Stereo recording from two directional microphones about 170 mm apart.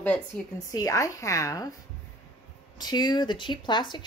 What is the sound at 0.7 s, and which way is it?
Speech, 20° left (ahead or behind).